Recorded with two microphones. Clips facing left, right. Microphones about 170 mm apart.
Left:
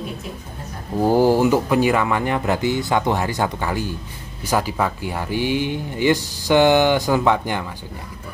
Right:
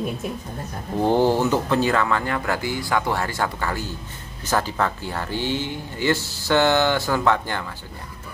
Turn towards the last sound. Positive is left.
turn(degrees=15)  # may be behind; listen again after turning